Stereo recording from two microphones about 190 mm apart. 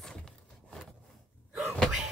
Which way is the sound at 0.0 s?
5° left (ahead or behind).